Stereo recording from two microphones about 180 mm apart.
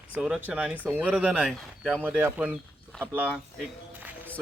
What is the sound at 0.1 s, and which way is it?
A man's voice, 5° right (ahead or behind).